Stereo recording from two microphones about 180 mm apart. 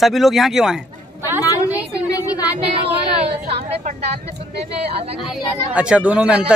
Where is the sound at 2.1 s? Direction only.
20° left (ahead or behind).